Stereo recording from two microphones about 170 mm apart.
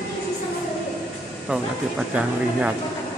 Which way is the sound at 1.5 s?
5° right (ahead or behind).